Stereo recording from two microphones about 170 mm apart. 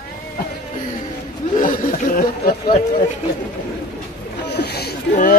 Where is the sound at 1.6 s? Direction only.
50° left (ahead or behind).